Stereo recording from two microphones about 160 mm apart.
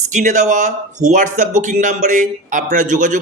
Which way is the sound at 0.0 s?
50° right (ahead or behind).